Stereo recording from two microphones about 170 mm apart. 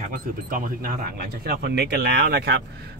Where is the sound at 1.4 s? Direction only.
70° right (ahead or behind).